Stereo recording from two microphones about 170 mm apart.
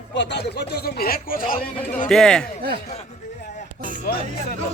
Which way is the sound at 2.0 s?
5° left (ahead or behind).